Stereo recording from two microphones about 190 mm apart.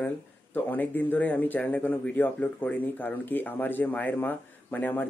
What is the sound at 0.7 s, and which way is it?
Speech, 10° left (ahead or behind).